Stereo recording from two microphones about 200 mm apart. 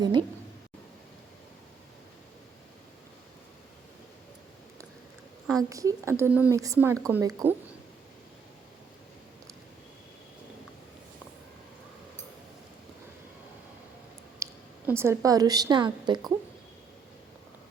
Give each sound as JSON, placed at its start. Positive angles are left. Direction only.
{"t": 0.0, "sound": "a woman's voice", "side_deg": -20}
{"t": 5.5, "sound": "a woman's voice", "side_deg": -15}
{"t": 14.4, "sound": "a sound", "side_deg": -15}
{"t": 14.8, "sound": "a woman's voice", "side_deg": -10}